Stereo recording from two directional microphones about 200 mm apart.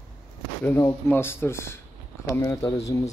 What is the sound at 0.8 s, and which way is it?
Speech, 10° left (ahead or behind).